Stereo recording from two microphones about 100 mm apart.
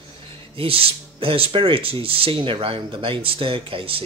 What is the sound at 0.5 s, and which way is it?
Speech, 70° right (ahead or behind).